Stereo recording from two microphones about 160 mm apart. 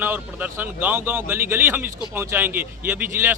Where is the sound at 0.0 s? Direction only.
10° right (ahead or behind).